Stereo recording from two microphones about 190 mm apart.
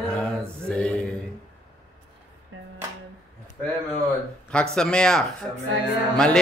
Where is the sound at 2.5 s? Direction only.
90° right.